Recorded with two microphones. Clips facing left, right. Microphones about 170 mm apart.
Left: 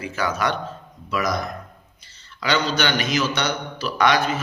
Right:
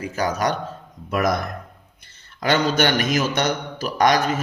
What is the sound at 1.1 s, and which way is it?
A man's voice, 55° right (ahead or behind).